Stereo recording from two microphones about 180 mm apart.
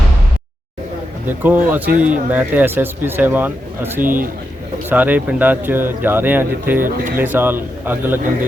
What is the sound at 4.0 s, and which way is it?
Speech, 50° right (ahead or behind).